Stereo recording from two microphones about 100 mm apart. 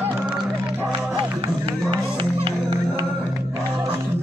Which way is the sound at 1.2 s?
60° right (ahead or behind).